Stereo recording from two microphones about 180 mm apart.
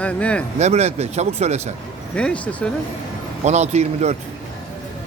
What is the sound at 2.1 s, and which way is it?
Speech, 5° left (ahead or behind).